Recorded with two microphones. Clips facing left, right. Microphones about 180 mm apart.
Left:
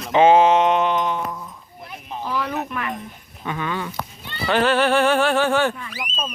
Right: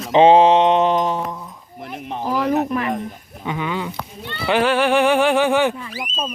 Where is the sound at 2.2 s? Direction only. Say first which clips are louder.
Right 6 dB; 40° right (ahead or behind).